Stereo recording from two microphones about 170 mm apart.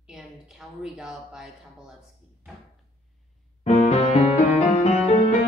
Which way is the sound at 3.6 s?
45° left (ahead or behind).